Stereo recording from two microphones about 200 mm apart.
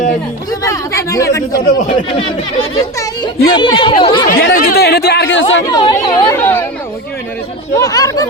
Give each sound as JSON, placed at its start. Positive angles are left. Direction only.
{"t": 0.6, "sound": "a sound", "side_deg": 15}
{"t": 1.6, "sound": "speech", "side_deg": 40}
{"t": 2.1, "sound": "speech", "side_deg": 25}
{"t": 4.3, "sound": "chatter", "side_deg": 55}
{"t": 5.6, "sound": "chatter", "side_deg": 20}
{"t": 7.8, "sound": "chatter", "side_deg": 15}